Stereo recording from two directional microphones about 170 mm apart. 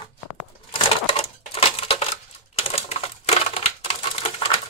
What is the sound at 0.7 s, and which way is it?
Cash register, 35° left (ahead or behind).